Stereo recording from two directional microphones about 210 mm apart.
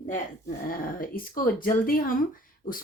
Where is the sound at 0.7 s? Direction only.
40° left (ahead or behind).